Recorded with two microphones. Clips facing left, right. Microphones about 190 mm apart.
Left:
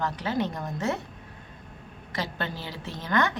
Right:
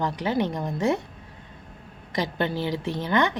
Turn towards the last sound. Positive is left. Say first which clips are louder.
# right 3 dB
turn(degrees=-15)  # may be behind; listen again after turning